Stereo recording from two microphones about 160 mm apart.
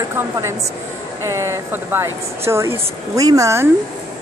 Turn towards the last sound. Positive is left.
turn(degrees=-20)  # may be behind; listen again after turning